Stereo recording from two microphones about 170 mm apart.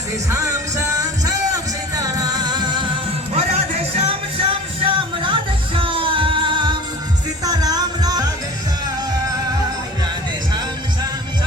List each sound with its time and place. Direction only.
0.3 s music: 15° right (ahead or behind)
3.3 s music: 35° right (ahead or behind)